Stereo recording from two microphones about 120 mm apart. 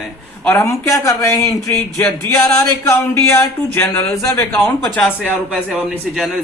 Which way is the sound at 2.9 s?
20° left (ahead or behind).